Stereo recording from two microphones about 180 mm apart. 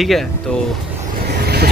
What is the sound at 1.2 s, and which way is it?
Vehicle, 60° right (ahead or behind).